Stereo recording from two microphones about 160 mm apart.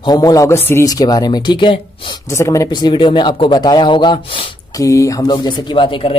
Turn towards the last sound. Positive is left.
turn(degrees=35)  # may be behind; listen again after turning